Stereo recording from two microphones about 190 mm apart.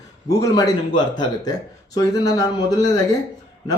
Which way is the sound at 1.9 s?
20° left (ahead or behind).